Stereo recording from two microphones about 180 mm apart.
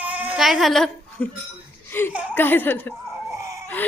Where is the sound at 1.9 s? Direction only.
10° left (ahead or behind).